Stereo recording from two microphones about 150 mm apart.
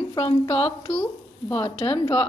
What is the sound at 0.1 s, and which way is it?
A woman's voice, 35° left (ahead or behind).